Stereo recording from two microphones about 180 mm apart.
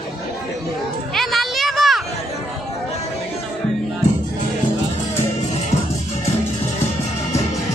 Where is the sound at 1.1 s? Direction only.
Centre (ahead or behind).